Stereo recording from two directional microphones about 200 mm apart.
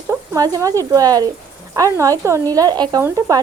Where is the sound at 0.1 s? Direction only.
15° right (ahead or behind).